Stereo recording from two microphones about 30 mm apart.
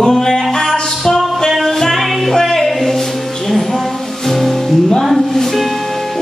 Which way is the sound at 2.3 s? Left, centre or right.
Centre.